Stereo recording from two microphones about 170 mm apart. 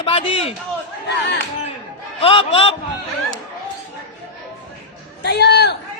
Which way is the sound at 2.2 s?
30° left (ahead or behind).